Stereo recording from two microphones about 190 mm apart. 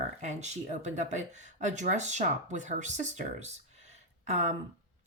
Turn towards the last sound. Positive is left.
turn(degrees=-40)  # may be behind; listen again after turning